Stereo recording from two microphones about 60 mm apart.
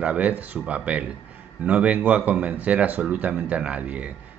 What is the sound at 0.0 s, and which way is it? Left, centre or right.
A man's voice, right.